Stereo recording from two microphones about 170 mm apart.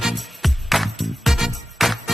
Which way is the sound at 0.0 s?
Centre (ahead or behind).